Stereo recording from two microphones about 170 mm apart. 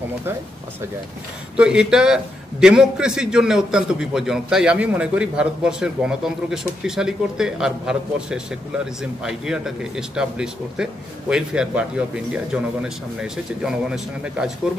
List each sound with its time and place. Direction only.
1.6 s a man's voice: 5° right (ahead or behind)
12.8 s a man's voice: 5° right (ahead or behind)